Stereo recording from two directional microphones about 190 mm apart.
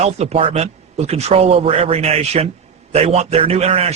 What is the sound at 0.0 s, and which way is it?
A man's voice, 35° right (ahead or behind).